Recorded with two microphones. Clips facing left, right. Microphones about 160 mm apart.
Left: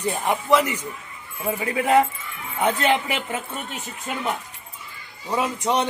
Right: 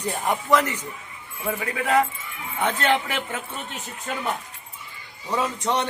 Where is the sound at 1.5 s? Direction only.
25° left (ahead or behind).